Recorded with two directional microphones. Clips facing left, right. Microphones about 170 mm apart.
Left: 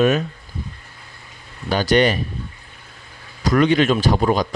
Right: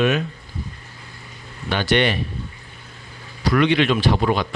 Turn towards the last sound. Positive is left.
turn(degrees=40)  # may be behind; listen again after turning